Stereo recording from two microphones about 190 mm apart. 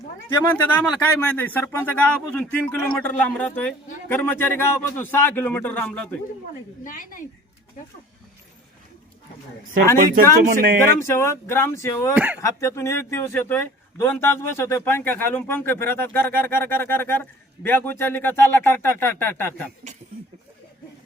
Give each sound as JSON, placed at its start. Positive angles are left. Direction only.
{"t": 0.5, "sound": "a man's voice", "side_deg": 5}
{"t": 6.8, "sound": "a woman's voice", "side_deg": 45}
{"t": 10.5, "sound": "speech", "side_deg": -50}
{"t": 11.0, "sound": "a man's voice", "side_deg": 15}
{"t": 12.1, "sound": "speech", "side_deg": -10}
{"t": 12.4, "sound": "a man's voice", "side_deg": 15}